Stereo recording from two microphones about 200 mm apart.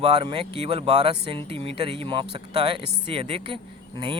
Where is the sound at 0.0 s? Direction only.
25° right (ahead or behind).